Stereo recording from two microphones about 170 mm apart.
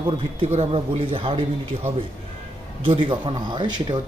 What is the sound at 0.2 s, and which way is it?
Speech, 35° right (ahead or behind).